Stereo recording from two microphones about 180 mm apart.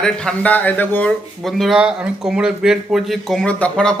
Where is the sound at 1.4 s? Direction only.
Centre (ahead or behind).